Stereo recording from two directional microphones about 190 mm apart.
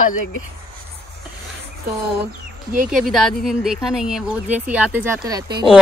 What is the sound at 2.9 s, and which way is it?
Speech, centre (ahead or behind).